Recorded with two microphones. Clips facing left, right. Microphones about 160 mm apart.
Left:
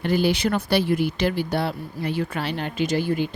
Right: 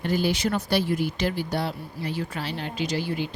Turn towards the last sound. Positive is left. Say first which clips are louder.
# left 5 dB
turn(degrees=50)  # may be behind; listen again after turning